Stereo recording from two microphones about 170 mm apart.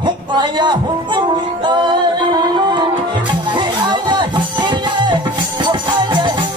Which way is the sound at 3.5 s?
25° right (ahead or behind).